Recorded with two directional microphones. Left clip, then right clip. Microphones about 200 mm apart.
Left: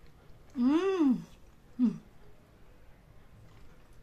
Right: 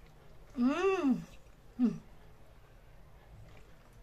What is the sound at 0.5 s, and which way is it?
Speech, 20° right (ahead or behind).